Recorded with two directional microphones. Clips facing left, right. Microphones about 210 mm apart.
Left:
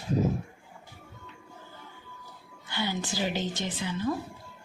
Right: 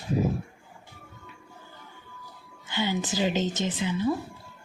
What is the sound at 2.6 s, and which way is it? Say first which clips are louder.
A woman's voice: right 4 dB; 15° right (ahead or behind).